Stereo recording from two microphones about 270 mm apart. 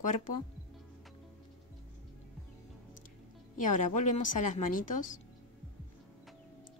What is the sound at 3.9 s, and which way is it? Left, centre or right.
Speech, left.